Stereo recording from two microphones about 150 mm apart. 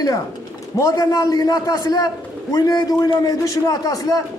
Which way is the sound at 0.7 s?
20° left (ahead or behind).